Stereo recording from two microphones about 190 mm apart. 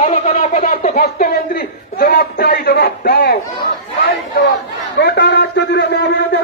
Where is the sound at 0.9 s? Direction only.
55° left (ahead or behind).